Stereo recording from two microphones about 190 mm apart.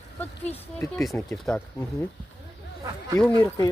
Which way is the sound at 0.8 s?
5° left (ahead or behind).